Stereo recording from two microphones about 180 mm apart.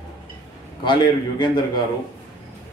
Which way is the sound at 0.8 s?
25° left (ahead or behind).